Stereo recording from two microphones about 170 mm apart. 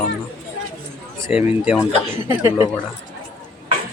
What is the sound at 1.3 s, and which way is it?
Speech, 5° right (ahead or behind).